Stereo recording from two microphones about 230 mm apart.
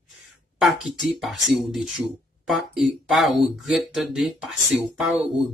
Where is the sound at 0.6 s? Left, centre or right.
Centre.